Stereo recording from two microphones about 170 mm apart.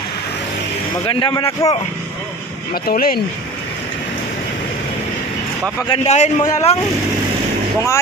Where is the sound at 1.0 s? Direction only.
30° left (ahead or behind).